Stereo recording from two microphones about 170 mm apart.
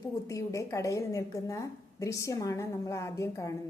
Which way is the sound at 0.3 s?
20° left (ahead or behind).